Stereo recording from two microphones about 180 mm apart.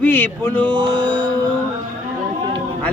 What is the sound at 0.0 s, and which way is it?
Speech, 10° left (ahead or behind).